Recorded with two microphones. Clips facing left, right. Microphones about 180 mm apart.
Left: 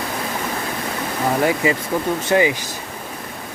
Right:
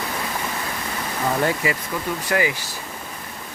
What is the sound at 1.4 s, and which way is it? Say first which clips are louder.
Speech: left 4 dB; 25° left (ahead or behind).